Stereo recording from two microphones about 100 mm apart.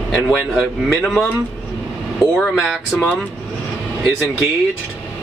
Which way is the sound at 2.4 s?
5° right (ahead or behind).